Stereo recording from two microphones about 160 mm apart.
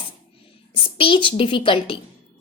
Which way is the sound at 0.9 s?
35° left (ahead or behind).